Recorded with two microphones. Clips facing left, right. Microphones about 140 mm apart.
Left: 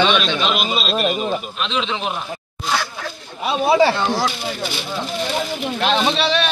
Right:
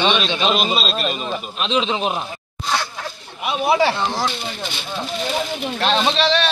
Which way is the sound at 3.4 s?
25° left (ahead or behind).